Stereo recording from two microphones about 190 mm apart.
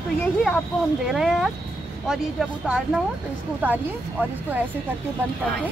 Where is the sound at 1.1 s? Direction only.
Centre (ahead or behind).